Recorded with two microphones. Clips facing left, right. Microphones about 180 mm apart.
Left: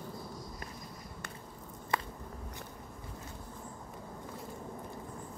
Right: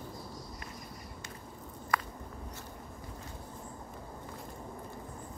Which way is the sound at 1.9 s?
25° left (ahead or behind).